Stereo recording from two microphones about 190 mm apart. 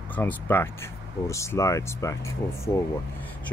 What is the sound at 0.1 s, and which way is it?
Speech, 10° left (ahead or behind).